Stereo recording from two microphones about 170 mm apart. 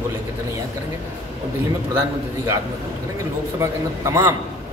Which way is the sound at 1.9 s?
15° right (ahead or behind).